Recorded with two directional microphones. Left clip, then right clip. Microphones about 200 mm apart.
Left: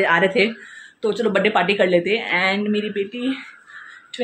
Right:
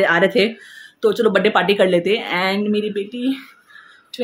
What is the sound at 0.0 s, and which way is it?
A woman's voice, 30° right (ahead or behind).